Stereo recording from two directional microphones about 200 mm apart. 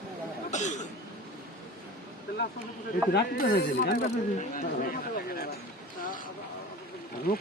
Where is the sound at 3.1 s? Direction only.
50° left (ahead or behind).